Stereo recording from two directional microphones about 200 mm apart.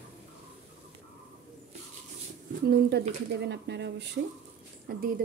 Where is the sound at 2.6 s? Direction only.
55° right (ahead or behind).